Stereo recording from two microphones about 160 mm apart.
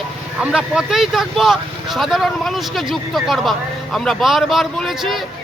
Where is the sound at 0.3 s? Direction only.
5° right (ahead or behind).